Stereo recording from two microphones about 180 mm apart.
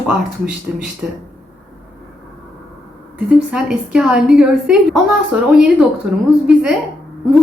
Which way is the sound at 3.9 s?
5° right (ahead or behind).